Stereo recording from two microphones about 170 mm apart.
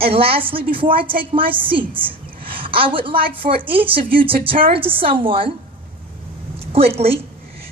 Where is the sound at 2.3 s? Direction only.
30° right (ahead or behind).